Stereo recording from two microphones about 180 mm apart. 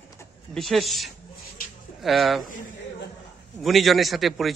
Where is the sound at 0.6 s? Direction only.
Centre (ahead or behind).